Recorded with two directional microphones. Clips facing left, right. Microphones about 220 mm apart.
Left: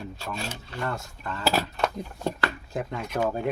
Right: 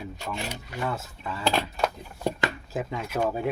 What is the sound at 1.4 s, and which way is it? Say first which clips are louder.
Speech: left 1 dB; 5° left (ahead or behind).